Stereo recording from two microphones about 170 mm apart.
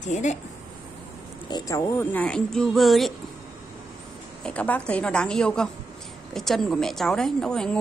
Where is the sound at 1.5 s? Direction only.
20° left (ahead or behind); by 3.1 s centre (ahead or behind).